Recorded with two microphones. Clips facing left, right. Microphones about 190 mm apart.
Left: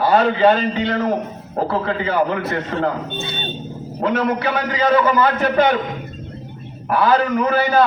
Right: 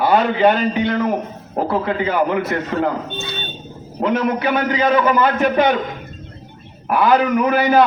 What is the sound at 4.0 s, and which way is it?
A man's voice, 15° right (ahead or behind).